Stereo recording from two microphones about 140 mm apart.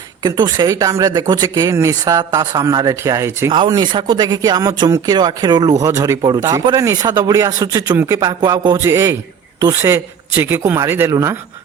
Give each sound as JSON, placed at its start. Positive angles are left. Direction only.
{"t": 0.2, "sound": "speech", "side_deg": -30}
{"t": 3.5, "sound": "a man's voice", "side_deg": -30}